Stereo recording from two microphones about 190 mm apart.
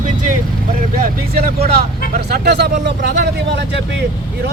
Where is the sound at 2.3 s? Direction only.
60° right (ahead or behind).